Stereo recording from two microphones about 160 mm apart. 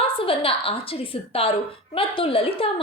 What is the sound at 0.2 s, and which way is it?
A woman's voice, 35° left (ahead or behind).